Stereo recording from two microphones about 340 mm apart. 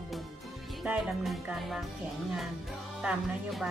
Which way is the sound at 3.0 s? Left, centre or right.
Centre.